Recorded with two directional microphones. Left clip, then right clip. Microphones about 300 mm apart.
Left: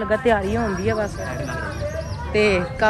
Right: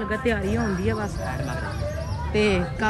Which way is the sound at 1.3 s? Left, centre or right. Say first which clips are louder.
Left 3 dB; right.